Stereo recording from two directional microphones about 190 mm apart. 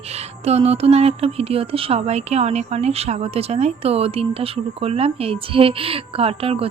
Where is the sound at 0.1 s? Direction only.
35° right (ahead or behind).